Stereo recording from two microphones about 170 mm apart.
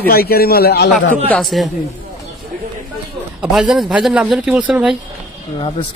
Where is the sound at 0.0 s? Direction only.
60° left (ahead or behind).